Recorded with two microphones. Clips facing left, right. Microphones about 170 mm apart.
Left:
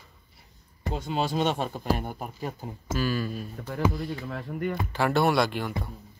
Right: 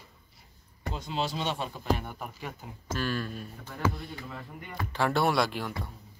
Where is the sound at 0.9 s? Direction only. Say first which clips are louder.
Left 5 dB; 55° left (ahead or behind).